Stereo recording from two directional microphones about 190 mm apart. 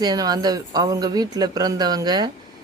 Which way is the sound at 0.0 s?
20° right (ahead or behind).